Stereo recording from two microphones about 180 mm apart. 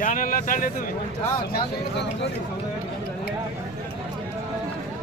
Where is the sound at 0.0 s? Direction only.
50° left (ahead or behind).